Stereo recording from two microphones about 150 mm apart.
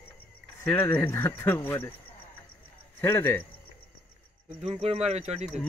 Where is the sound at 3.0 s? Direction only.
15° left (ahead or behind).